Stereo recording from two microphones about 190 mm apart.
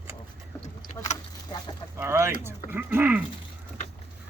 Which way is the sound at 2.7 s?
10° right (ahead or behind).